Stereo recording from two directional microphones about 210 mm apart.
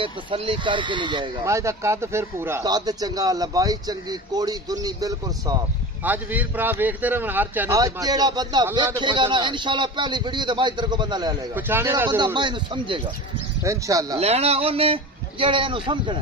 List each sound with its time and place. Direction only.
0.0 s a man's voice: 25° right (ahead or behind)
14.1 s a man's voice: 30° right (ahead or behind)